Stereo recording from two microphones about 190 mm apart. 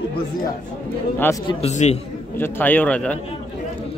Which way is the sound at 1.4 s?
35° left (ahead or behind).